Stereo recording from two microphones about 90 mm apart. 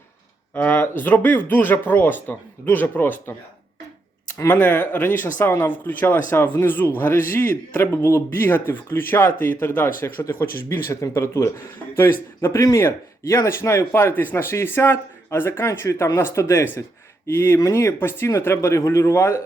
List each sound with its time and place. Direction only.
0.5 s a man's voice: 20° left (ahead or behind)
4.4 s a man's voice: 20° left (ahead or behind)